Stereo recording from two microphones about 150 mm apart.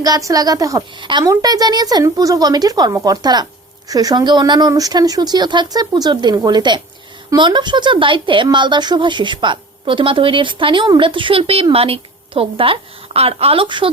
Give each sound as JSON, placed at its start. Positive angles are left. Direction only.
{"t": 0.0, "sound": "a woman's voice", "side_deg": -25}